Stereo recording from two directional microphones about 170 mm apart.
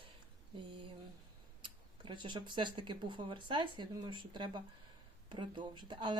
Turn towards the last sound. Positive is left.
turn(degrees=-25)  # may be behind; listen again after turning